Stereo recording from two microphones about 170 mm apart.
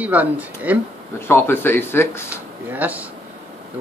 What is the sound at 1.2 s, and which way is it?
Speech, 15° left (ahead or behind).